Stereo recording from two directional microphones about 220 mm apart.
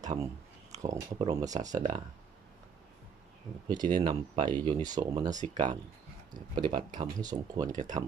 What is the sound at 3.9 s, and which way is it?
Speech, 25° right (ahead or behind).